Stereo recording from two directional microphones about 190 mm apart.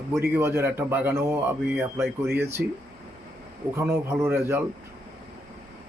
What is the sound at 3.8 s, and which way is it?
Speech, 15° right (ahead or behind).